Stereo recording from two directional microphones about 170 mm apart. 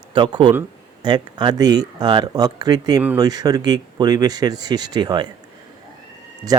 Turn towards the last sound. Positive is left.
turn(degrees=-20)  # may be behind; listen again after turning